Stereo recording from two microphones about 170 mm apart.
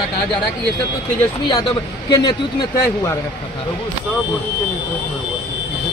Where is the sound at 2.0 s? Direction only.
25° left (ahead or behind).